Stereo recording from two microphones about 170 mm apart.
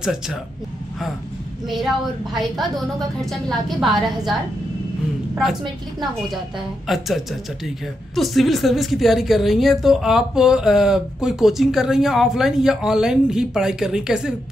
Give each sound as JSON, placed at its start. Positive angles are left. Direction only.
{"t": 0.0, "sound": "a woman's voice", "side_deg": 0}
{"t": 2.3, "sound": "a woman's voice", "side_deg": 0}
{"t": 6.9, "sound": "a woman's voice", "side_deg": 0}